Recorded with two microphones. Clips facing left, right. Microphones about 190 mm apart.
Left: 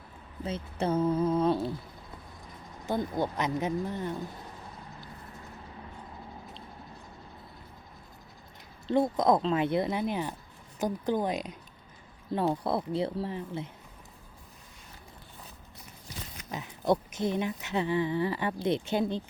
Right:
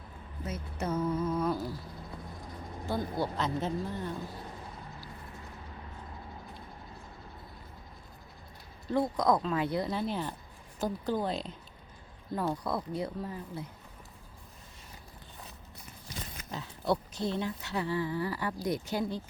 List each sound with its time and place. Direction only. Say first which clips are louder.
0.4 s speech: left 5 dB; 30° left (ahead or behind)
2.8 s speech: left 3 dB; 20° left (ahead or behind)
8.9 s speech: left 3 dB; 25° left (ahead or behind)
12.3 s speech: left 4 dB; 25° left (ahead or behind)
16.5 s speech: left 4 dB; 20° left (ahead or behind)